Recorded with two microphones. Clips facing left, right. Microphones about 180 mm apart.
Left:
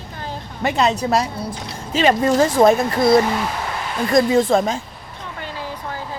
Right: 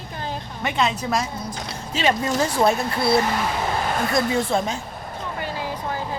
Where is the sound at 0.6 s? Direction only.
40° left (ahead or behind).